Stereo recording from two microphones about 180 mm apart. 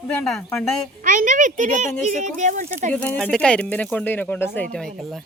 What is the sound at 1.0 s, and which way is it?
A child's voice, 45° right (ahead or behind).